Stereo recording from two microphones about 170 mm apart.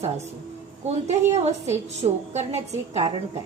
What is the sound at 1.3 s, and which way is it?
A woman's voice, 40° right (ahead or behind).